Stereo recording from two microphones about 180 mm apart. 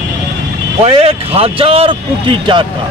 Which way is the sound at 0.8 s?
30° right (ahead or behind).